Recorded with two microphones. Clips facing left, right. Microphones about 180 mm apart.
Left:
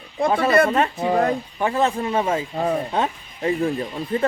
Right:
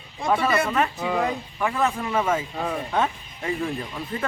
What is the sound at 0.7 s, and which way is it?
Speech, 35° left (ahead or behind).